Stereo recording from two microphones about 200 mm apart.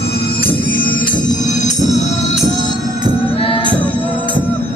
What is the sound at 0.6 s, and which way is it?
Music, 45° left (ahead or behind).